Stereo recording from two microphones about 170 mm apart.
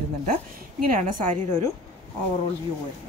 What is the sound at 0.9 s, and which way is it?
Speech, 50° right (ahead or behind).